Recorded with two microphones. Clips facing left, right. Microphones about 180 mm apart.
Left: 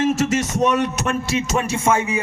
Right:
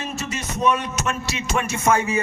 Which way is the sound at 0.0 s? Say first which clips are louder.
Left 11 dB; 90° left.